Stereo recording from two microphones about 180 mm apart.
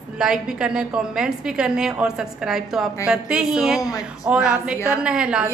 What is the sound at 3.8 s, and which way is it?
Speech, 20° left (ahead or behind).